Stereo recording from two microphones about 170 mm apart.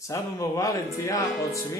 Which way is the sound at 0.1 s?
20° left (ahead or behind).